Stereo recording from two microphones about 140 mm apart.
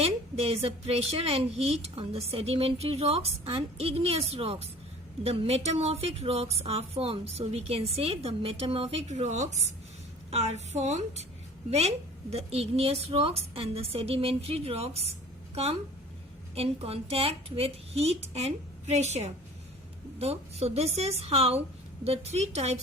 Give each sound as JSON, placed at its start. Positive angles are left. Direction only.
{"t": 0.0, "sound": "speech", "side_deg": -45}
{"t": 20.1, "sound": "speech", "side_deg": -45}